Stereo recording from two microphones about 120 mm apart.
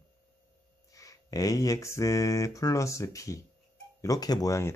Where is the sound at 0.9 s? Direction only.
30° left (ahead or behind).